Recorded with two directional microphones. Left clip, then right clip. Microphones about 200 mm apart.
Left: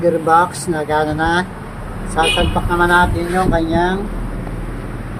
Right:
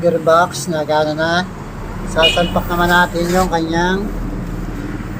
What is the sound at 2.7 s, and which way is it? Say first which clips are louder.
Speech: left 1 dB; 5° right (ahead or behind).